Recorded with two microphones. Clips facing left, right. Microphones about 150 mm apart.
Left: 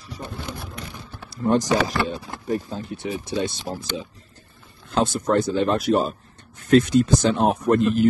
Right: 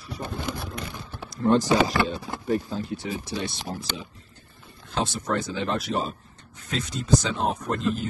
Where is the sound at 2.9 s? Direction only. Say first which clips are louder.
Left 4 dB; 20° left (ahead or behind).